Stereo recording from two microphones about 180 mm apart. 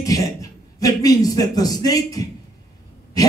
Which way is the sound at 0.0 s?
20° left (ahead or behind).